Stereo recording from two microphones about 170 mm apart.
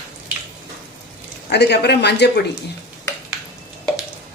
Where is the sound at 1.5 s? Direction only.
80° left.